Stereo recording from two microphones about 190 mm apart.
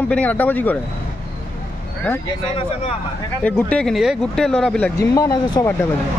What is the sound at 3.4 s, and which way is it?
Speech, 5° left (ahead or behind).